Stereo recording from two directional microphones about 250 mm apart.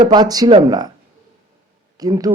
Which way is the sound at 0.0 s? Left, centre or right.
Centre.